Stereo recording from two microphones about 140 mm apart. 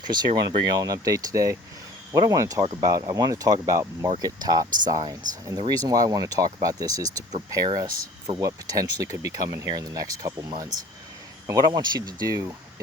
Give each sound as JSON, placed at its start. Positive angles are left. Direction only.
{"t": 0.0, "sound": "speech", "side_deg": -30}
{"t": 11.4, "sound": "speech", "side_deg": -30}